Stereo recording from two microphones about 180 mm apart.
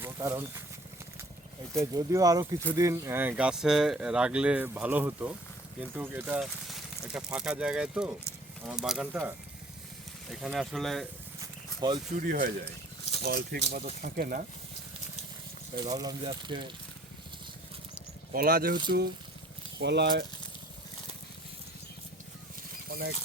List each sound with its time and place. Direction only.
0.0 s speech: 15° right (ahead or behind)
1.8 s speech: 15° right (ahead or behind)
10.4 s speech: centre (ahead or behind)
11.3 s a sound: 20° right (ahead or behind)
12.1 s speech: 50° right (ahead or behind)
13.2 s speech: 65° right (ahead or behind)
14.0 s speech: 50° right (ahead or behind)
16.0 s speech: 25° right (ahead or behind)
18.3 s speech: 55° right (ahead or behind)
19.8 s speech: 70° right (ahead or behind)
22.9 s speech: 55° right (ahead or behind)